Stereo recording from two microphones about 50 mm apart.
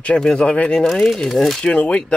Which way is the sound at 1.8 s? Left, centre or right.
Left.